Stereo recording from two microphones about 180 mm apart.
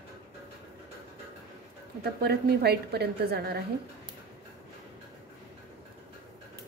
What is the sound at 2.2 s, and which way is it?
A woman's voice, 65° right (ahead or behind).